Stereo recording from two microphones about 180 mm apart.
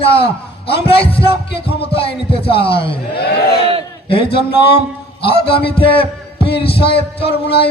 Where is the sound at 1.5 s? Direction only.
65° left (ahead or behind).